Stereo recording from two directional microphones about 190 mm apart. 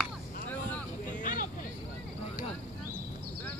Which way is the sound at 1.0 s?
45° left (ahead or behind).